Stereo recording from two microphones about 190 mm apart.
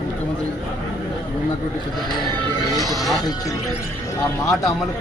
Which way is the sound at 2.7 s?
20° left (ahead or behind).